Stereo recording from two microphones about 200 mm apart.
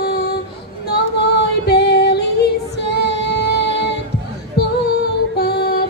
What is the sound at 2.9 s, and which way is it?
Child singing, 55° left (ahead or behind).